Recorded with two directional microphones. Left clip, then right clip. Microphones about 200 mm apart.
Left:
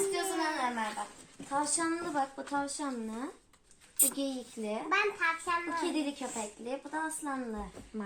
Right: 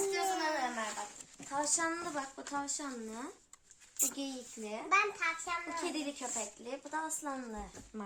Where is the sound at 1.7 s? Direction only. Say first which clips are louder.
Left 3 dB; 15° left (ahead or behind).